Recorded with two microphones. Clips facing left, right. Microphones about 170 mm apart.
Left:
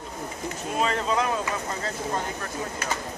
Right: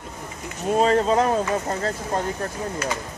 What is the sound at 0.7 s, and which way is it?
Speech, 35° right (ahead or behind).